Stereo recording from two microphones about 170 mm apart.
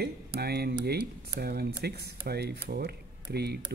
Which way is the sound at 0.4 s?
70° right (ahead or behind).